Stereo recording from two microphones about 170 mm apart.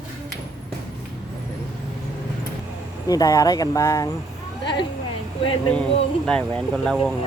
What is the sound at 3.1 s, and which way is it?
Speech, 20° left (ahead or behind).